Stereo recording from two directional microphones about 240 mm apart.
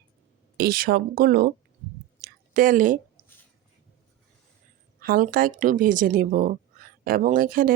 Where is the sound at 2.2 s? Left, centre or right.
Right.